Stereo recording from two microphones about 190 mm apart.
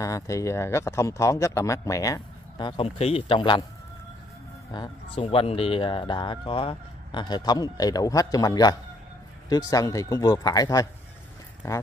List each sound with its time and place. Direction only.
0.0 s speech: 15° left (ahead or behind)
4.7 s speech: 25° left (ahead or behind)